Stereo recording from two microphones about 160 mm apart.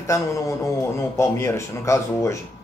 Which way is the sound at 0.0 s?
20° left (ahead or behind).